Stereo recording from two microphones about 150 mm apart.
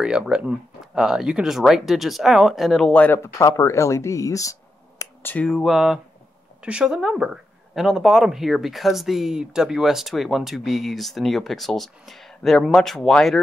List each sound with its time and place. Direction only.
0.0 s speech: 5° right (ahead or behind); by 5.3 s 20° left (ahead or behind)
5.3 s speech: 5° left (ahead or behind)